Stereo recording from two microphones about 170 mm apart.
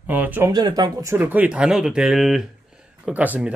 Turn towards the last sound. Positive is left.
turn(degrees=-10)  # may be behind; listen again after turning